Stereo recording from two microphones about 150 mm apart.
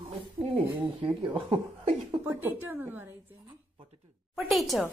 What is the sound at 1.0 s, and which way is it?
Speech, 30° right (ahead or behind).